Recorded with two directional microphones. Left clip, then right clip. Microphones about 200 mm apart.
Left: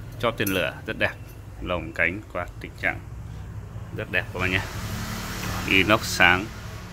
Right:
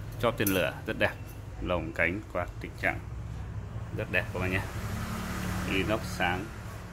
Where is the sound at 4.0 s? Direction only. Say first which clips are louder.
Left 5 dB; centre (ahead or behind).